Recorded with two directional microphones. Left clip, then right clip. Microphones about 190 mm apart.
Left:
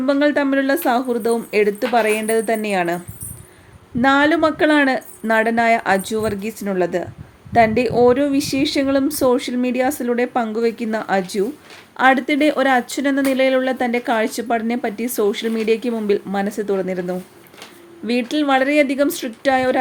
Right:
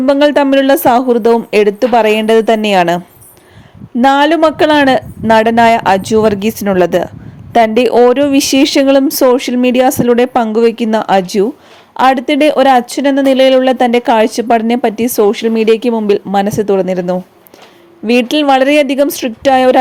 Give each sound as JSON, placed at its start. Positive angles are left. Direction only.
{"t": 0.0, "sound": "speech", "side_deg": -35}
{"t": 4.0, "sound": "speech", "side_deg": -35}